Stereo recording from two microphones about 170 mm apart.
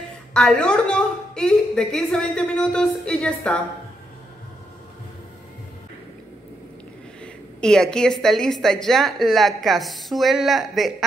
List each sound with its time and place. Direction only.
0.3 s a woman's voice: 5° left (ahead or behind)
7.6 s a woman's voice: 5° left (ahead or behind)